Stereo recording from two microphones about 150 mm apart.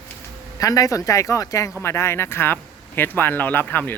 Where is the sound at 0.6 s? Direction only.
25° left (ahead or behind).